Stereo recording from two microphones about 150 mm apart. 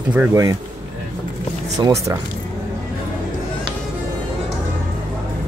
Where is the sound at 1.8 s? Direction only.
20° right (ahead or behind).